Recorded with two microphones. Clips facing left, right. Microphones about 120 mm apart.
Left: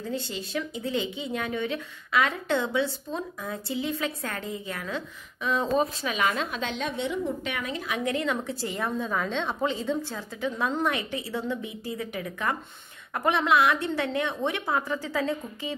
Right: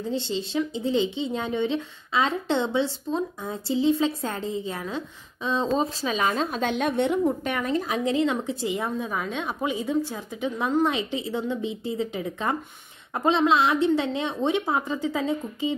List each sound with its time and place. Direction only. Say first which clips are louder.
0.1 s speech: right 4 dB; 25° right (ahead or behind)
8.0 s a woman's voice: right 1 dB; 25° right (ahead or behind)